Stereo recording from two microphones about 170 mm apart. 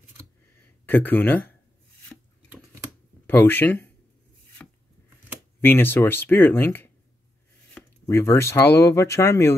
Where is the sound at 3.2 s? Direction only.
10° left (ahead or behind).